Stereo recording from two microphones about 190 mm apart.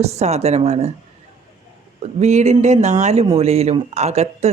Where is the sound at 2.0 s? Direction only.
35° right (ahead or behind).